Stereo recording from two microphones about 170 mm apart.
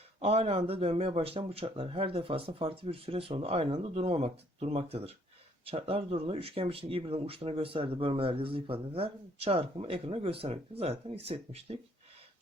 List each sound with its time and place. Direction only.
0.2 s speech: 35° right (ahead or behind)